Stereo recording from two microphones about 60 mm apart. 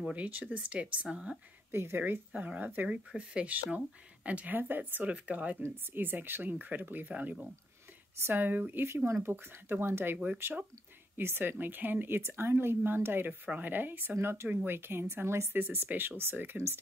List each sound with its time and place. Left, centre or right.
0.0 s speech: right
1.7 s speech: right
2.0 s speech: right
3.1 s speech: centre
4.6 s speech: right
5.6 s speech: right
10.1 s speech: right
14.1 s speech: right